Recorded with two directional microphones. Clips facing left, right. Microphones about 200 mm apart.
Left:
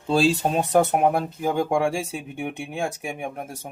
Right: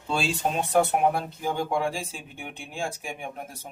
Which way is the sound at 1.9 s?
70° left (ahead or behind).